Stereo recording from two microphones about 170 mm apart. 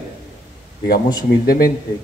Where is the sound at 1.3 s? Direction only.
60° left (ahead or behind).